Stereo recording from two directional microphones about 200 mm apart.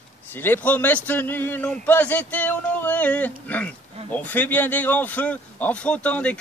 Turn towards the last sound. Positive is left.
turn(degrees=5)  # may be behind; listen again after turning